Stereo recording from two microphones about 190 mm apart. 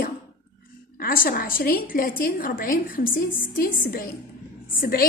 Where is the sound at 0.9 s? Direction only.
50° left (ahead or behind).